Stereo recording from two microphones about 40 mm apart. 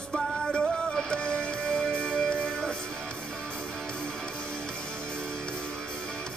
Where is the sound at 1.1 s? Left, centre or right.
Left.